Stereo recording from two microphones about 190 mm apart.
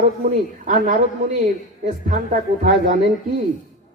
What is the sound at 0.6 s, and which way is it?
Speech, 40° right (ahead or behind).